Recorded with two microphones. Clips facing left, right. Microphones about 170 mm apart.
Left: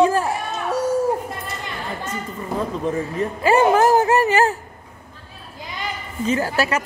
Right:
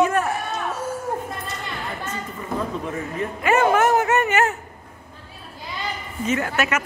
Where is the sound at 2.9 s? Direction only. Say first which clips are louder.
Left 4 dB; 30° left (ahead or behind).